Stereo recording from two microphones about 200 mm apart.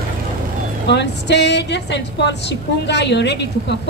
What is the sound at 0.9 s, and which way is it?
A woman's voice, 60° left (ahead or behind).